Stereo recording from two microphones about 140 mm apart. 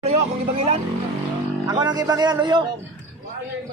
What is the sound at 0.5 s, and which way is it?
Speech, 45° right (ahead or behind).